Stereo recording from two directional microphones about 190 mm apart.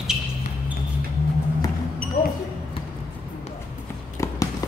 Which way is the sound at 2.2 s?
45° left (ahead or behind).